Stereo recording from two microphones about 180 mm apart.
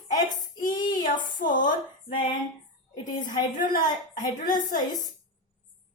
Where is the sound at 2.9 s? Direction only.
25° left (ahead or behind).